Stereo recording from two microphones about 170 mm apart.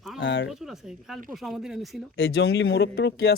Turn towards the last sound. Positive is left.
turn(degrees=70)  # may be behind; listen again after turning